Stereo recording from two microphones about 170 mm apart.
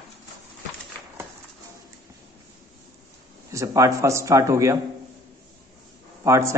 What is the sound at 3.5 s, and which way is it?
Speech, 20° right (ahead or behind).